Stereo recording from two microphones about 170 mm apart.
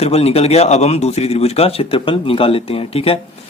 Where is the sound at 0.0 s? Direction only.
35° left (ahead or behind).